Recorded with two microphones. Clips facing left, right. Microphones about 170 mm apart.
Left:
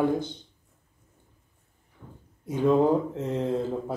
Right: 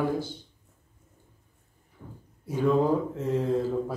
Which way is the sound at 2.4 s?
20° left (ahead or behind).